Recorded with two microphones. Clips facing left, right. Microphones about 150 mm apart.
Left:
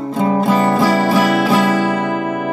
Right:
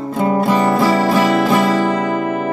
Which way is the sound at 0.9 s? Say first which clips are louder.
Even; 5° left (ahead or behind).